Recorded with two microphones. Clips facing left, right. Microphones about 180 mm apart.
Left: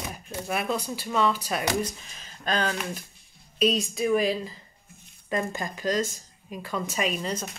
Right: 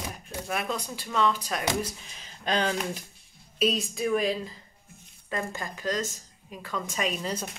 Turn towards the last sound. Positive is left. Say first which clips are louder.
# left 2 dB
turn(degrees=0)  # may be behind; listen again after turning